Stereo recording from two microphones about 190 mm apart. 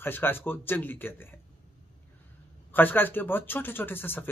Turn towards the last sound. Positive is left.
turn(degrees=10)  # may be behind; listen again after turning